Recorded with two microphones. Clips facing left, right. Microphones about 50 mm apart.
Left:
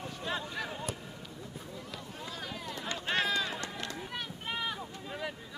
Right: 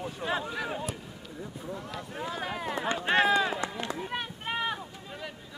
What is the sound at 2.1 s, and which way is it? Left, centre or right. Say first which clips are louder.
Speech: right 9 dB; right.